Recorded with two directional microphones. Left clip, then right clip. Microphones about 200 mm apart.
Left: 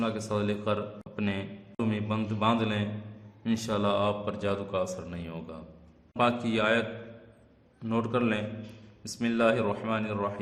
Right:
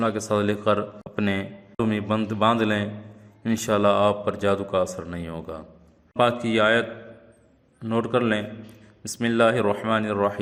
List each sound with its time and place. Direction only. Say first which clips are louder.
0.0 s a man's voice: right 8 dB; 30° right (ahead or behind)